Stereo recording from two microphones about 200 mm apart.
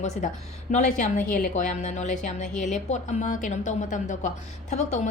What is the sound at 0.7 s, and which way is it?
Speech, 35° left (ahead or behind).